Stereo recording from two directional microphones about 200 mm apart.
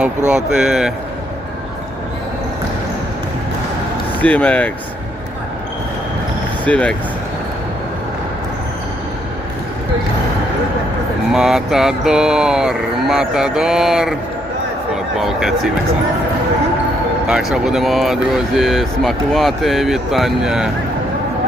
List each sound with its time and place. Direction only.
0.3 s speech: 5° right (ahead or behind)
4.2 s speech: 5° left (ahead or behind)
6.7 s speech: 5° left (ahead or behind)
11.3 s speech: centre (ahead or behind)
17.2 s speech: 5° right (ahead or behind)